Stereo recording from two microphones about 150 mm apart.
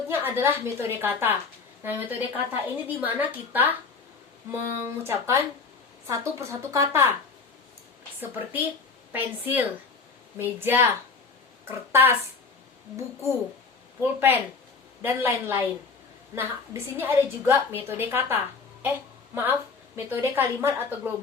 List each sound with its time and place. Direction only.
0.1 s a woman's voice: 15° right (ahead or behind)
4.8 s a woman's voice: 15° right (ahead or behind)
9.1 s a woman's voice: 10° right (ahead or behind)
14.0 s a woman's voice: 15° right (ahead or behind)